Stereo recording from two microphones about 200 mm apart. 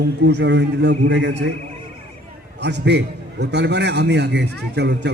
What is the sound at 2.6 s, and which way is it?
A man's voice, 60° right (ahead or behind).